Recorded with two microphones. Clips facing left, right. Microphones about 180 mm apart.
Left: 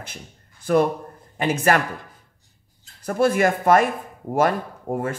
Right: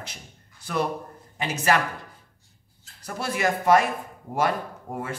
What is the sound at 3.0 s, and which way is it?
Speech, 50° left (ahead or behind).